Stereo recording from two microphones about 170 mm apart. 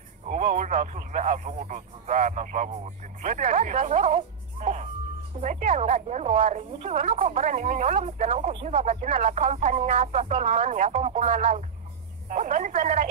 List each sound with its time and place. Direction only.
0.3 s a woman's voice: 45° right (ahead or behind)